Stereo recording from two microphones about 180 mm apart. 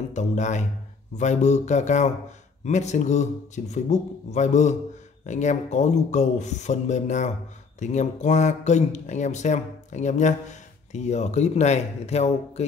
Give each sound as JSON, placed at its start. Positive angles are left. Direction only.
{"t": 0.1, "sound": "speech", "side_deg": 40}